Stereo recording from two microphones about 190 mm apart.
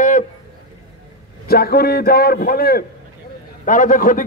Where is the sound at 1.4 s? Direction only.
55° left (ahead or behind).